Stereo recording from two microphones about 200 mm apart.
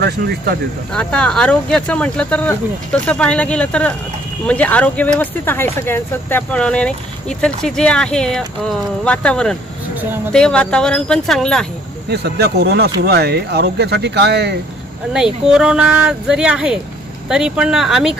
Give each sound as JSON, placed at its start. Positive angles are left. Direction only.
{"t": 0.0, "sound": "speech", "side_deg": -55}
{"t": 0.9, "sound": "speech", "side_deg": 5}
{"t": 12.1, "sound": "speech", "side_deg": -55}
{"t": 15.1, "sound": "speech", "side_deg": -5}